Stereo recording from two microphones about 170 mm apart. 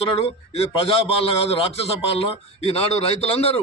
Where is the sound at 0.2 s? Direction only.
35° left (ahead or behind).